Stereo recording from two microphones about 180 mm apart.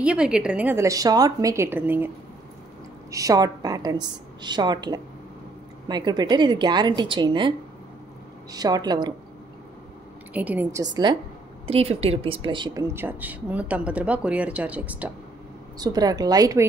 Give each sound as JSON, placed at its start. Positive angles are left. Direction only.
{"t": 0.0, "sound": "a woman's voice", "side_deg": -5}
{"t": 10.3, "sound": "speech", "side_deg": -10}
{"t": 11.6, "sound": "speech", "side_deg": -35}
{"t": 15.8, "sound": "a woman's voice", "side_deg": -20}